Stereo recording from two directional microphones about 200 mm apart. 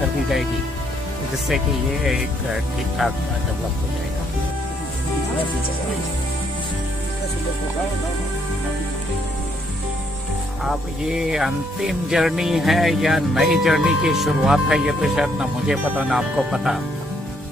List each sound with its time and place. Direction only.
2.0 s speech: centre (ahead or behind)
10.6 s speech: centre (ahead or behind)